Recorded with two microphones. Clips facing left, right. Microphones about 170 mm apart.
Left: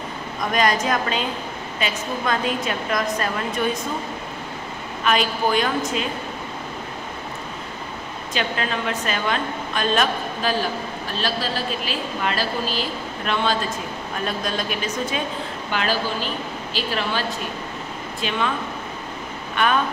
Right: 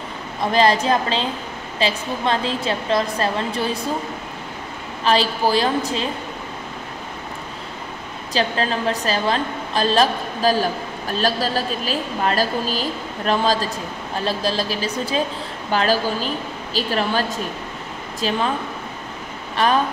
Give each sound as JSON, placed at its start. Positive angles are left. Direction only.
{"t": 0.4, "sound": "a woman's voice", "side_deg": -30}
{"t": 5.0, "sound": "a woman's voice", "side_deg": -30}
{"t": 8.3, "sound": "a woman's voice", "side_deg": -35}
{"t": 18.2, "sound": "a woman's voice", "side_deg": -35}
{"t": 19.5, "sound": "speech", "side_deg": -35}